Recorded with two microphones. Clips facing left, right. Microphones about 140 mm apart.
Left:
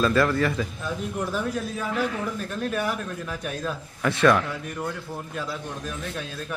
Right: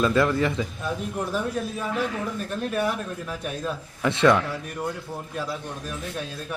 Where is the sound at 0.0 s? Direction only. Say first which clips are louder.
Even; 20° right (ahead or behind).